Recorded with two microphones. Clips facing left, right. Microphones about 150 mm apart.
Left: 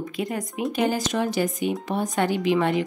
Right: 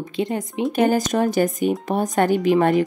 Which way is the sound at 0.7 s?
50° right (ahead or behind).